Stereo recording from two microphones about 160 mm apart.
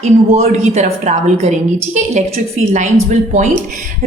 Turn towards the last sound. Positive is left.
turn(degrees=-50)  # may be behind; listen again after turning